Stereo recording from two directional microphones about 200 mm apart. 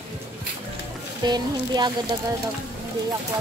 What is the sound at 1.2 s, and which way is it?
Speech, 20° right (ahead or behind).